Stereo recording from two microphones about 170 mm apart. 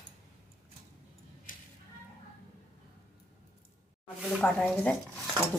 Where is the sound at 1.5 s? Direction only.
50° left (ahead or behind).